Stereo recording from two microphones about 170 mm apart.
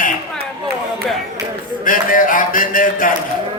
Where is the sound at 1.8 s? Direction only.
55° left (ahead or behind).